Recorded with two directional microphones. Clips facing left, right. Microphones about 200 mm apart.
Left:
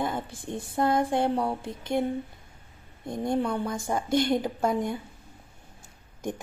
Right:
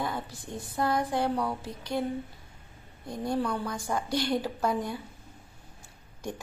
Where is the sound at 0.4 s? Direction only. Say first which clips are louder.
Left 5 dB; 25° left (ahead or behind).